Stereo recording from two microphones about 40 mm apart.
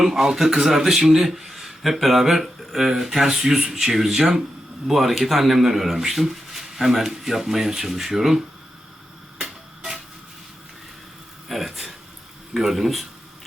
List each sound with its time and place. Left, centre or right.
0.0 s speech: centre
9.4 s tick-tock: centre
11.4 s a sound: centre
12.5 s speech: centre